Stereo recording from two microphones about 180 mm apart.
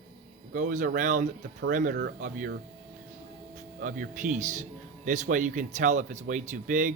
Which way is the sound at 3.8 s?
45° right (ahead or behind).